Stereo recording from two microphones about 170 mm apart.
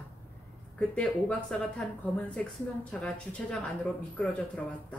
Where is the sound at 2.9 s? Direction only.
5° left (ahead or behind).